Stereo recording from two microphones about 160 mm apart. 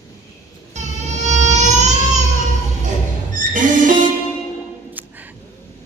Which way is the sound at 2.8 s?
55° right (ahead or behind).